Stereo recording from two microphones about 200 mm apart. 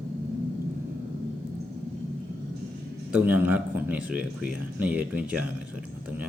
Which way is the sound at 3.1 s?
10° right (ahead or behind).